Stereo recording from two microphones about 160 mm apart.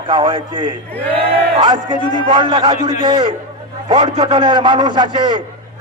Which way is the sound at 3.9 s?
30° right (ahead or behind).